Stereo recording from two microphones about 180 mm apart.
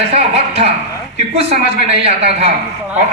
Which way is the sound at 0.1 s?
35° right (ahead or behind).